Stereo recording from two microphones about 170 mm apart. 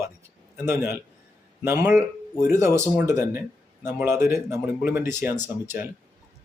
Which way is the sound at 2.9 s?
15° right (ahead or behind).